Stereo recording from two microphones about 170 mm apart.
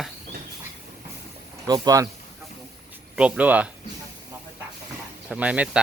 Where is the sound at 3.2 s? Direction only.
10° right (ahead or behind).